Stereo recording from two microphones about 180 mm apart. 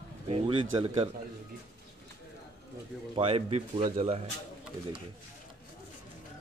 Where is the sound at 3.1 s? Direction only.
30° right (ahead or behind).